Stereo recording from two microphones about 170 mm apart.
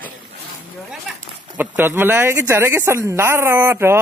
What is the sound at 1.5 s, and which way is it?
Speech, 10° right (ahead or behind).